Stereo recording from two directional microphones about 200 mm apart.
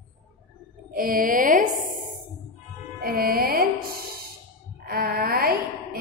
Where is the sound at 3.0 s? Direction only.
50° right (ahead or behind).